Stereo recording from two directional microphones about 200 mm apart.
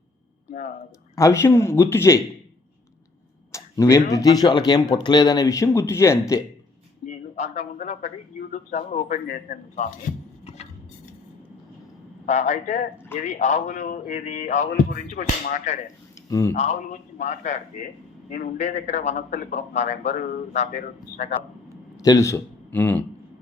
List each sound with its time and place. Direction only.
1.1 s speech: 15° left (ahead or behind)
3.5 s a sound: 15° left (ahead or behind)
4.1 s speech: 20° left (ahead or behind)
7.0 s a man's voice: 35° left (ahead or behind)
12.2 s a man's voice: 35° left (ahead or behind)
16.3 s speech: 15° left (ahead or behind)
16.6 s a man's voice: 35° left (ahead or behind)
21.9 s a man's voice: 15° left (ahead or behind)